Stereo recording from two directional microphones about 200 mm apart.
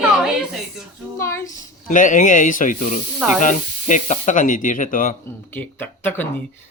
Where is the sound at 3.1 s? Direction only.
5° right (ahead or behind).